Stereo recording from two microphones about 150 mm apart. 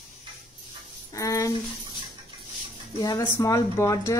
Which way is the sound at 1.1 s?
20° left (ahead or behind).